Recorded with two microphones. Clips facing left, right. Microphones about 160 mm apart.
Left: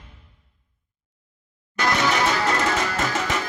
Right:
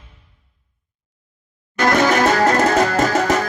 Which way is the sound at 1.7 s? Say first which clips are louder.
Right 7 dB; 50° right (ahead or behind).